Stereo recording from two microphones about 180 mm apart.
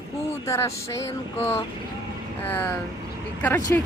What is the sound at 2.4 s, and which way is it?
Speech, 10° left (ahead or behind).